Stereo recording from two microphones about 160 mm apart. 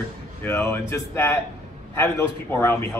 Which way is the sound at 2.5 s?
15° left (ahead or behind).